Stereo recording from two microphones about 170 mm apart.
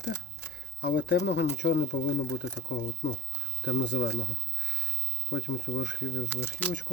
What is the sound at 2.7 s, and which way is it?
Speech, 90° left.